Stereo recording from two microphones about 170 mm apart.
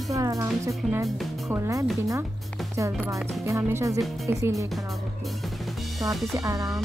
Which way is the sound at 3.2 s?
Centre (ahead or behind).